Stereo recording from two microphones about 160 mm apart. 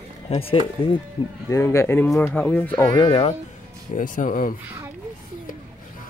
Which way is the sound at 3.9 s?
55° left (ahead or behind).